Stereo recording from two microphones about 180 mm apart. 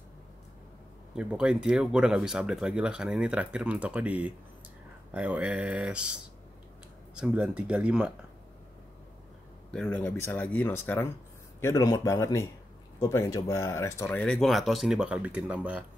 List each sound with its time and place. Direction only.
1.1 s speech: 5° right (ahead or behind)
7.2 s speech: 5° right (ahead or behind)
9.7 s speech: 5° left (ahead or behind)